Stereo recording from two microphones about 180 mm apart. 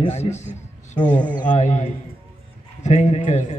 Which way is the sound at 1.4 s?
40° left (ahead or behind).